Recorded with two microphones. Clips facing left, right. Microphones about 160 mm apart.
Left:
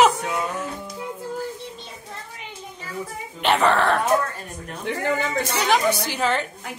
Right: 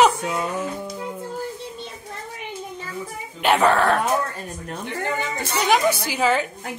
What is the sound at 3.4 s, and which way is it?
Speech, 5° right (ahead or behind).